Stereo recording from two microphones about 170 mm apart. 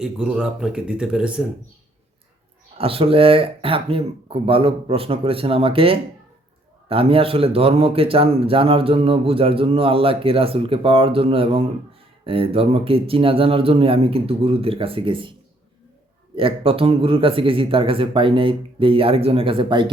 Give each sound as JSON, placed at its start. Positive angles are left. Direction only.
{"t": 0.0, "sound": "speech", "side_deg": -5}
{"t": 2.7, "sound": "a man's voice", "side_deg": -35}